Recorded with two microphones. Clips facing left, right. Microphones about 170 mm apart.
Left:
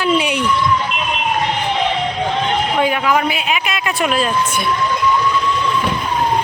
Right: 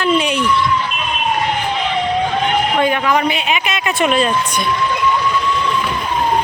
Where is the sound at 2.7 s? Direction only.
5° left (ahead or behind).